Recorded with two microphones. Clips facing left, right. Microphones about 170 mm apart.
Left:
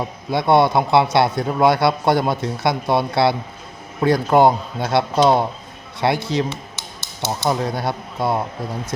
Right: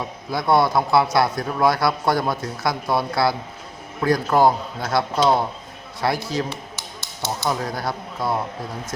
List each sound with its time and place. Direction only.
0.0 s speech: 25° left (ahead or behind)
7.4 s speech: 25° left (ahead or behind)